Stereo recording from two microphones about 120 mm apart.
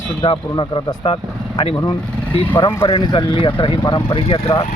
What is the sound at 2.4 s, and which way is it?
Speech, 45° left (ahead or behind).